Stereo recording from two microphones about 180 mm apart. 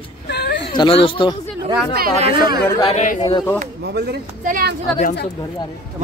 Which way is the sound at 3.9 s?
65° right (ahead or behind).